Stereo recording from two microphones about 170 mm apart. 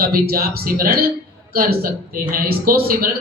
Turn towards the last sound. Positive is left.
turn(degrees=-60)  # may be behind; listen again after turning